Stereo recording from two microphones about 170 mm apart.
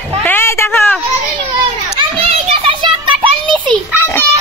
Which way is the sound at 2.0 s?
35° right (ahead or behind).